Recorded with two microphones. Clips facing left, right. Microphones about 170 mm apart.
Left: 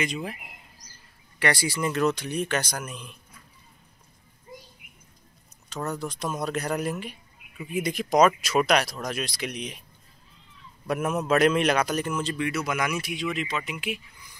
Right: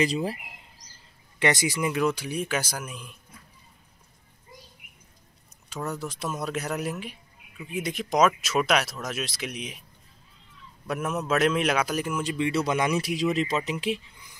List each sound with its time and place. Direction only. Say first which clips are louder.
0.0 s speech: right 5 dB; 35° right (ahead or behind)
1.4 s speech: right 1 dB; 20° right (ahead or behind)
5.7 s a man's voice: left 1 dB; 5° right (ahead or behind)
10.9 s a man's voice: left 3 dB; centre (ahead or behind)
12.4 s speech: right 7 dB; 30° right (ahead or behind)